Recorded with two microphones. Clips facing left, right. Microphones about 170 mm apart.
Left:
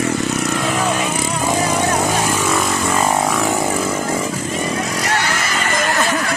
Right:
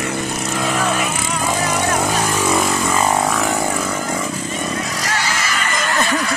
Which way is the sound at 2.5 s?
Centre (ahead or behind).